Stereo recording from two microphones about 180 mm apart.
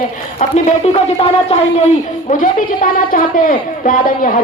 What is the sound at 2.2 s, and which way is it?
A woman's voice, 45° left (ahead or behind).